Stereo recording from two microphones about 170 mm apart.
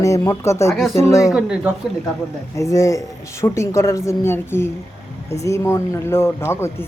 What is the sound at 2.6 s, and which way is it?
Speech, 20° left (ahead or behind).